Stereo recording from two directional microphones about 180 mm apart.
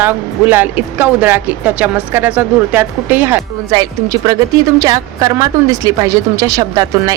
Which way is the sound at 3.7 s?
20° right (ahead or behind).